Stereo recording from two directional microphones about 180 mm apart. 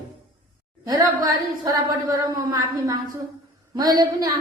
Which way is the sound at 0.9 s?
20° right (ahead or behind).